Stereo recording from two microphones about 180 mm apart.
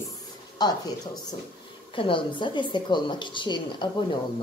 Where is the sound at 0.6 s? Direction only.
20° left (ahead or behind).